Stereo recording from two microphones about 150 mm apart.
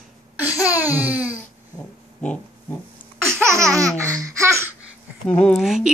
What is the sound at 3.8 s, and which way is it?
Baby laughter, 20° right (ahead or behind).